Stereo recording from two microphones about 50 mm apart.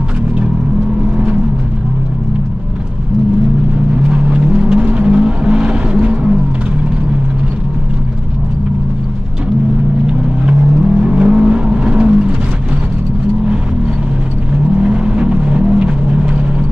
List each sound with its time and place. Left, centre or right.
4.1 s vehicle: centre
11.0 s vehicle: right
14.8 s vehicle: centre